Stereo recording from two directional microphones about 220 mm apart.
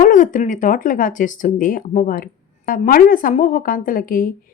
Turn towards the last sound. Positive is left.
turn(degrees=40)  # may be behind; listen again after turning